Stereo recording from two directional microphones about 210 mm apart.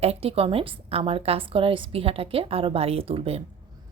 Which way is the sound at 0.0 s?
30° right (ahead or behind).